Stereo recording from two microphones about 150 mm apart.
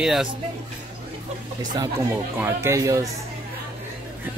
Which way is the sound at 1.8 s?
20° right (ahead or behind).